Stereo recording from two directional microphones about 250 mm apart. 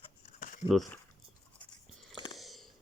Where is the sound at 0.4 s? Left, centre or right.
Left.